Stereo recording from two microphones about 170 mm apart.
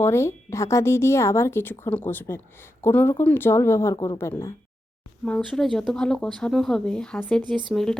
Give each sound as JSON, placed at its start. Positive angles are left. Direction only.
{"t": 0.0, "sound": "speech", "side_deg": 15}
{"t": 3.9, "sound": "a woman's voice", "side_deg": 25}
{"t": 4.2, "sound": "speech", "side_deg": 15}